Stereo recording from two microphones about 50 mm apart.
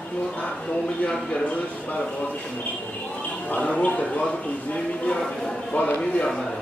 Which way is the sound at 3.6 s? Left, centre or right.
Left.